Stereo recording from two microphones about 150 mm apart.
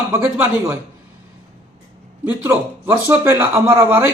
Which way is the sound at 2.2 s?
15° right (ahead or behind).